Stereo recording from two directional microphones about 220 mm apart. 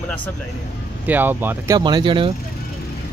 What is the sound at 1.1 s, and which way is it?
Speech, 10° right (ahead or behind).